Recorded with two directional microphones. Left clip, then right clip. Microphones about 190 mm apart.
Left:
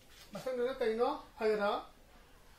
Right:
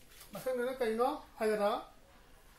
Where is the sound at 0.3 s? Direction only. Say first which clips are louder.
Even; 20° right (ahead or behind).